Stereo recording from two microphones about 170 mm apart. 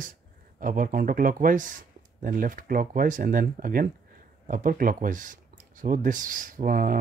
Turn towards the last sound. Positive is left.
turn(degrees=-55)  # may be behind; listen again after turning